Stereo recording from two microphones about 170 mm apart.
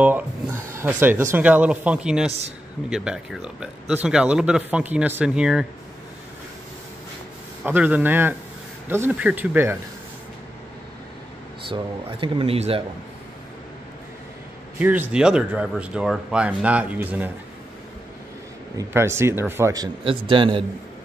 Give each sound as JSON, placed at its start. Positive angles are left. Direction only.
{"t": 0.0, "sound": "speech", "side_deg": -15}
{"t": 7.6, "sound": "speech", "side_deg": -10}
{"t": 11.7, "sound": "speech", "side_deg": -30}
{"t": 14.8, "sound": "speech", "side_deg": -10}
{"t": 18.8, "sound": "a man's voice", "side_deg": -15}